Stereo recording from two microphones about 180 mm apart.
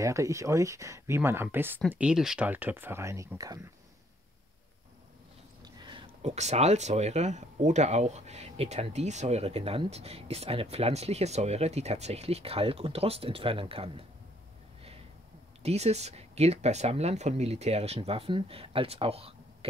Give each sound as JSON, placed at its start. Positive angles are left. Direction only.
{"t": 0.0, "sound": "speech", "side_deg": -15}
{"t": 5.6, "sound": "a sound", "side_deg": -25}
{"t": 6.2, "sound": "speech", "side_deg": -40}
{"t": 15.6, "sound": "speech", "side_deg": -35}